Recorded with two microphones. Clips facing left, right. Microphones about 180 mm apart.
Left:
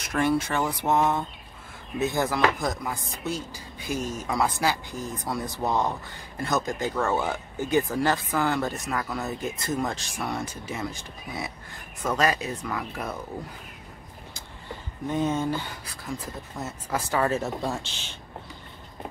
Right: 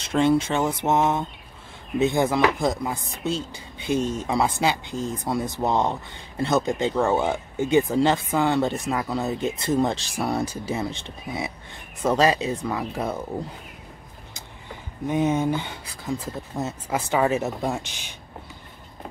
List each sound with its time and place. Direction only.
0.0 s speech: 25° right (ahead or behind)
15.0 s speech: 15° right (ahead or behind)